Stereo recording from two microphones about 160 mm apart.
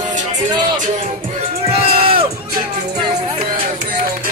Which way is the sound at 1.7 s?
35° right (ahead or behind).